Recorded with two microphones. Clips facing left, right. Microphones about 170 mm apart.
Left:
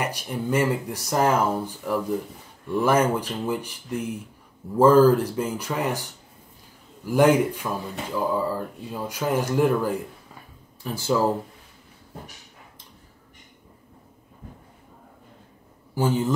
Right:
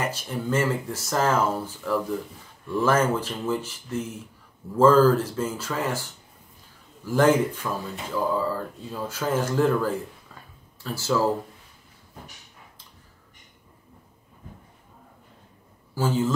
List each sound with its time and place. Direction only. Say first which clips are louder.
0.0 s speech: left 1 dB; 15° left (ahead or behind)
7.1 s speech: left 2 dB; 15° left (ahead or behind)
15.9 s a man's voice: left 1 dB; 15° left (ahead or behind)